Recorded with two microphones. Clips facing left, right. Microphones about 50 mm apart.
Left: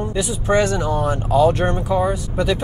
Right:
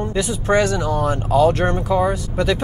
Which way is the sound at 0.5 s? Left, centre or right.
Left.